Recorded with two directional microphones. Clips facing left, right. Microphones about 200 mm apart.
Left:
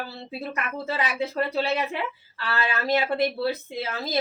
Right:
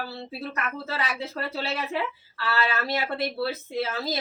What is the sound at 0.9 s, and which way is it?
Speech, 15° left (ahead or behind).